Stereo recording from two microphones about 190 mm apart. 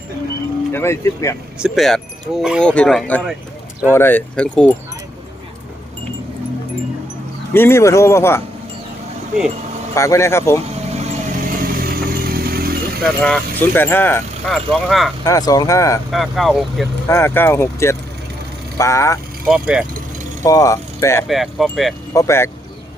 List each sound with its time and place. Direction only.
0.7 s speech: 15° left (ahead or behind)
1.5 s speech: centre (ahead or behind)
7.5 s speech: 10° left (ahead or behind)
9.9 s speech: 15° left (ahead or behind)
11.0 s vehicle: 45° right (ahead or behind)
13.0 s speech: 5° left (ahead or behind)
15.2 s speech: 20° left (ahead or behind)
16.1 s speech: centre (ahead or behind)
17.1 s speech: 15° left (ahead or behind)
19.5 s speech: 5° right (ahead or behind)
20.4 s speech: 15° left (ahead or behind)
21.2 s speech: centre (ahead or behind)
22.1 s speech: 15° left (ahead or behind)